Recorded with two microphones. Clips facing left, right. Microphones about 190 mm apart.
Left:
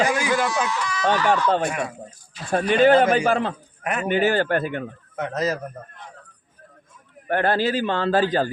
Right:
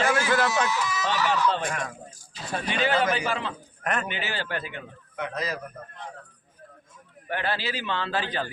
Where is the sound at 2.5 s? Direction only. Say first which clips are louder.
Left 10 dB; 50° left (ahead or behind).